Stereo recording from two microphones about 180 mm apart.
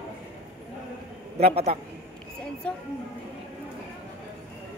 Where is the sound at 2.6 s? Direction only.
5° left (ahead or behind).